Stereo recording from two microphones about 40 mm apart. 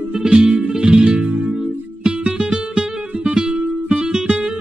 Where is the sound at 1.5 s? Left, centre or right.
Right.